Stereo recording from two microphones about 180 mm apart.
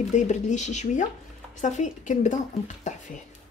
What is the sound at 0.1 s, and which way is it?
Speech, 40° left (ahead or behind).